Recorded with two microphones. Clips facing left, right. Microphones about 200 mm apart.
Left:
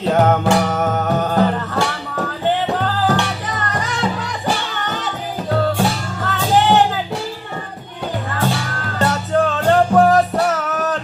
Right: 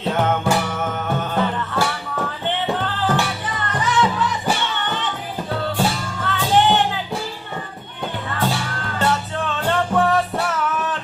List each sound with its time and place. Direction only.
0.1 s music: 40° left (ahead or behind)
6.2 s music: 40° left (ahead or behind)
8.4 s music: 40° left (ahead or behind)